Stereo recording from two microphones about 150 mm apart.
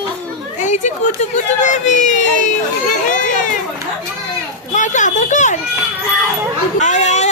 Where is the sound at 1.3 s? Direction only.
55° left (ahead or behind).